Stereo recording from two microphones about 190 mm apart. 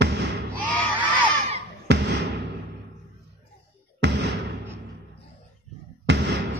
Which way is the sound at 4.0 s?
70° right (ahead or behind).